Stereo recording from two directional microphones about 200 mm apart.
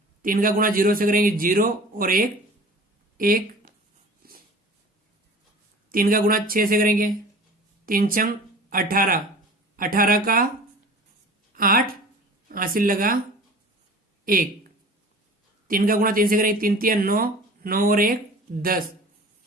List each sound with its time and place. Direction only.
0.2 s speech: 45° right (ahead or behind)
4.2 s wheeze: 45° right (ahead or behind)
5.9 s speech: 45° right (ahead or behind)
11.5 s a woman's voice: 45° right (ahead or behind)
15.6 s speech: 45° right (ahead or behind)